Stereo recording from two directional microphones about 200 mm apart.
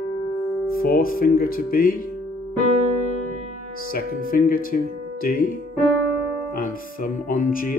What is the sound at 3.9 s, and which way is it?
A man's voice, 45° left (ahead or behind).